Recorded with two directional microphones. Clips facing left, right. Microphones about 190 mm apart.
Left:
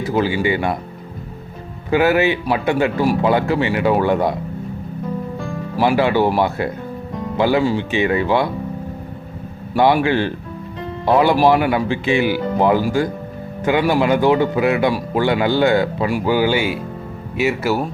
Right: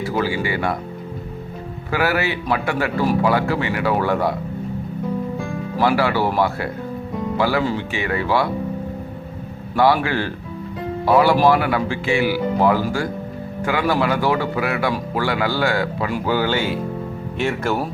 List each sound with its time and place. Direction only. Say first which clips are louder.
0.0 s speech: left 4 dB; 20° left (ahead or behind)
1.9 s speech: left 6 dB; 20° left (ahead or behind)
5.8 s speech: left 3 dB; 20° left (ahead or behind)
9.7 s speech: left 2 dB; 20° left (ahead or behind)